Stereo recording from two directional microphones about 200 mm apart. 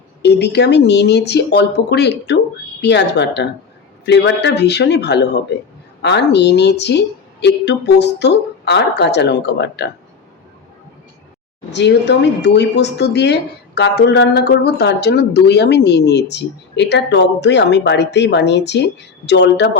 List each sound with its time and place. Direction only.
0.2 s speech: 55° left (ahead or behind)
11.7 s speech: 60° left (ahead or behind)